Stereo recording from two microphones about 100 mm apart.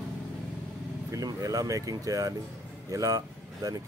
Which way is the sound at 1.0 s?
35° right (ahead or behind).